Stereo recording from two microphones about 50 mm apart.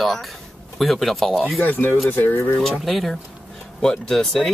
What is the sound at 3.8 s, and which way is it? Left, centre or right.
Speech, centre.